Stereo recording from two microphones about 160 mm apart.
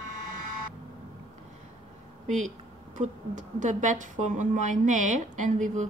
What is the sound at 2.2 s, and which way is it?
A woman's voice, 50° right (ahead or behind).